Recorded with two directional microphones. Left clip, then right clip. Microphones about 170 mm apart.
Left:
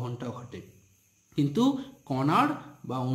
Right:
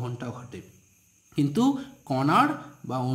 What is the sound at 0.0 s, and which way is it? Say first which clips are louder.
Speech: right 1 dB; 10° right (ahead or behind).